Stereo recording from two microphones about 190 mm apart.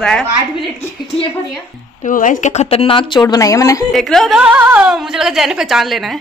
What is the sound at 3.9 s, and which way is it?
Speech, centre (ahead or behind).